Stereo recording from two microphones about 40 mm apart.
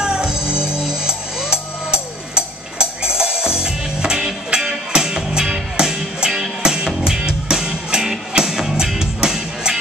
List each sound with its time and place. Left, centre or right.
0.0 s music: centre